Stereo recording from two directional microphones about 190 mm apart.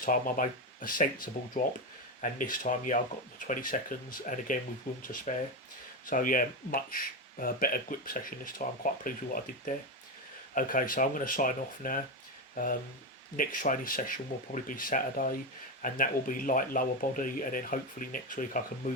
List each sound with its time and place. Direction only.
0.0 s speech: 45° left (ahead or behind)